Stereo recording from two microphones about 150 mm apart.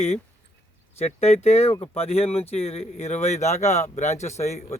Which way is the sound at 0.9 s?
45° left (ahead or behind).